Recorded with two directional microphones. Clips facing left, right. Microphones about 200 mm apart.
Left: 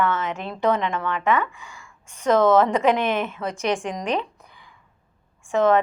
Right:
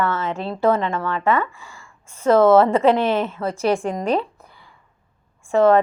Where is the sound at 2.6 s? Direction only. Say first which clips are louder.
Right 3 dB; 30° right (ahead or behind).